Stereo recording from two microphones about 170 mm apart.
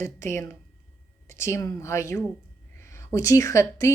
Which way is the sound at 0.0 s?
15° left (ahead or behind).